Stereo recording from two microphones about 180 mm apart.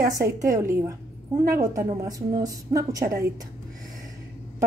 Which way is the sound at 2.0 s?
20° right (ahead or behind).